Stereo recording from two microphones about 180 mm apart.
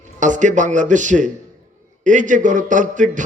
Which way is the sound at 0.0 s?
45° right (ahead or behind).